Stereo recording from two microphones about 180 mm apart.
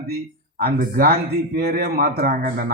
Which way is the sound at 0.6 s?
55° right (ahead or behind).